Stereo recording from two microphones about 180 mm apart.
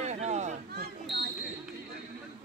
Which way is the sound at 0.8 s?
70° right (ahead or behind).